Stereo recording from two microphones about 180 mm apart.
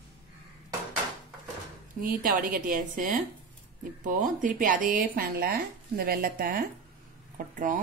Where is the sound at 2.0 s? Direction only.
50° right (ahead or behind).